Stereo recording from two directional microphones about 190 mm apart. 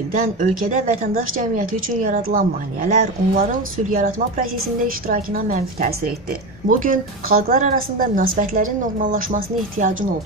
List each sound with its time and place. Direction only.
0.4 s a woman's voice: 40° right (ahead or behind)